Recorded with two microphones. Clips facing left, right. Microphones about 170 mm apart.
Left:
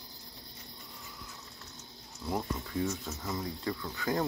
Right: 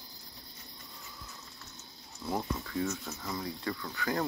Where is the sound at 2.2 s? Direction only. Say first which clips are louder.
Even; 15° left (ahead or behind).